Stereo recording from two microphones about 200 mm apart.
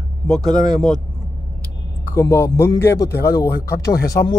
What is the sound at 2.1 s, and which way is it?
Speech, 15° left (ahead or behind).